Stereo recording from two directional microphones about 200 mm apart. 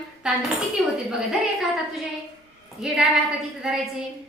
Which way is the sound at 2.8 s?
5° right (ahead or behind).